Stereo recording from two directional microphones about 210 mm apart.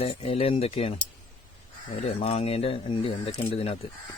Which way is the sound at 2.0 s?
30° left (ahead or behind).